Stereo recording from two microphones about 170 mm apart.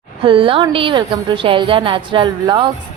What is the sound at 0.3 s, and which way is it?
A woman's voice, 30° right (ahead or behind).